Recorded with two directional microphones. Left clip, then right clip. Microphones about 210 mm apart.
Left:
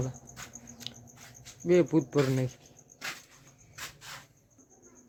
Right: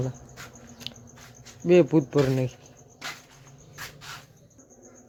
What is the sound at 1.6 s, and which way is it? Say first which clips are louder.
Speech: right 5 dB; 10° right (ahead or behind).